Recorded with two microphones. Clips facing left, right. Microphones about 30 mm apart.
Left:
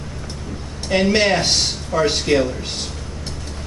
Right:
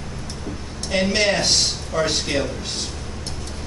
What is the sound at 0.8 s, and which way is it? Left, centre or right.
Speech, centre.